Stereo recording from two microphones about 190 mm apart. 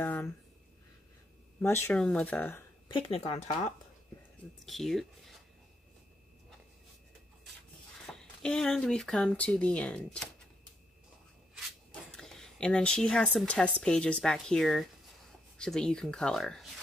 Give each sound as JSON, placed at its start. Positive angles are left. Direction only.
{"t": 0.0, "sound": "a sound", "side_deg": 10}
{"t": 1.6, "sound": "speech", "side_deg": 15}
{"t": 2.9, "sound": "speech", "side_deg": 30}
{"t": 4.6, "sound": "speech", "side_deg": 0}
{"t": 8.1, "sound": "speech", "side_deg": 5}
{"t": 11.5, "sound": "a sound", "side_deg": 5}
{"t": 13.7, "sound": "speech", "side_deg": 5}